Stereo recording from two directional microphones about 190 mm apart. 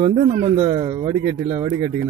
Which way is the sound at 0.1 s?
40° right (ahead or behind).